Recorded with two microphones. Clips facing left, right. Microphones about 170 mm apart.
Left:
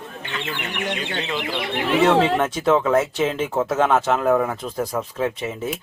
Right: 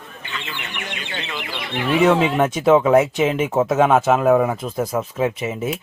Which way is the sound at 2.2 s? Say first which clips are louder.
Right 1 dB; 10° right (ahead or behind).